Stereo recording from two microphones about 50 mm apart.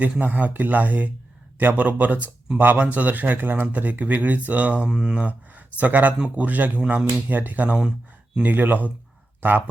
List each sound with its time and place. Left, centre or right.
0.0 s speech: right
4.9 s speech: centre
5.1 s speech: right